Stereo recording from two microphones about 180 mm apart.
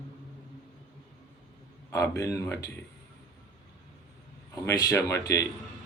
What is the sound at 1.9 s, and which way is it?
Speech, 15° left (ahead or behind).